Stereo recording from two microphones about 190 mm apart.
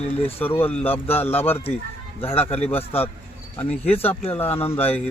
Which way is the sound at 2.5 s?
30° left (ahead or behind).